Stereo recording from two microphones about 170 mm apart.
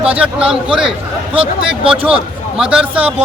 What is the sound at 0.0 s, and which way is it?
Speech, 5° right (ahead or behind).